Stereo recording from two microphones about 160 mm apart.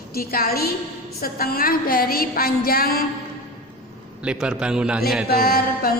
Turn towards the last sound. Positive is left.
turn(degrees=70)  # may be behind; listen again after turning